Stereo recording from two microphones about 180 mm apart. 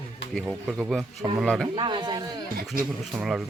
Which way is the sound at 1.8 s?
25° right (ahead or behind).